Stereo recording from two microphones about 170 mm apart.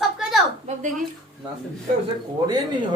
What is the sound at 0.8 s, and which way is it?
Speech, 50° right (ahead or behind).